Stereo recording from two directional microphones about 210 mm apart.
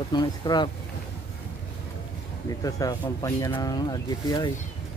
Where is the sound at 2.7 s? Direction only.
15° left (ahead or behind).